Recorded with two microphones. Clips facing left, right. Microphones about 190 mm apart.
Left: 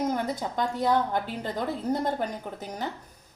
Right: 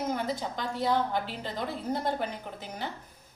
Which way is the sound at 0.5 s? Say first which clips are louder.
Left 5 dB; 50° left (ahead or behind).